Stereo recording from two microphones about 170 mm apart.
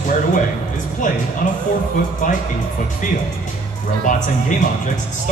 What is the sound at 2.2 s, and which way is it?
Speech, 50° left (ahead or behind).